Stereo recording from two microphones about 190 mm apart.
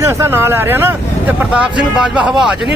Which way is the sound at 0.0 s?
15° right (ahead or behind).